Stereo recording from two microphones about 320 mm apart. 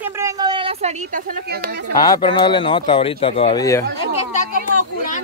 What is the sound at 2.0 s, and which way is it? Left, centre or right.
Speech, centre.